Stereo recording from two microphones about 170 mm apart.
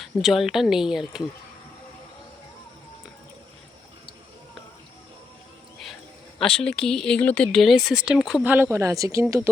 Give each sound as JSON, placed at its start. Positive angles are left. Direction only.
{"t": 0.0, "sound": "speech", "side_deg": 0}
{"t": 6.4, "sound": "speech", "side_deg": 5}
{"t": 8.5, "sound": "speech", "side_deg": -15}